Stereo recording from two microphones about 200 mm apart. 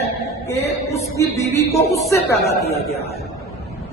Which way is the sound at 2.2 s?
50° left (ahead or behind).